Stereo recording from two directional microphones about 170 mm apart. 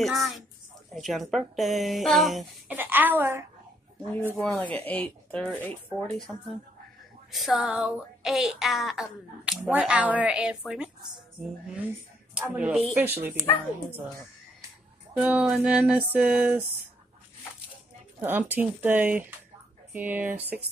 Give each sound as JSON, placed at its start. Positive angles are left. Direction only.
{"t": 0.0, "sound": "speech", "side_deg": 0}
{"t": 2.8, "sound": "speech", "side_deg": -10}
{"t": 4.4, "sound": "speech", "side_deg": 5}
{"t": 12.4, "sound": "speech", "side_deg": -5}
{"t": 13.4, "sound": "speech", "side_deg": 10}
{"t": 15.1, "sound": "speech", "side_deg": -5}
{"t": 18.2, "sound": "speech", "side_deg": -10}